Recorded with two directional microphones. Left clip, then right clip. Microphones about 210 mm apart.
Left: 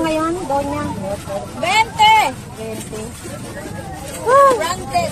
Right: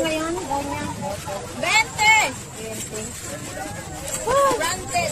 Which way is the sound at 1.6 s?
20° left (ahead or behind).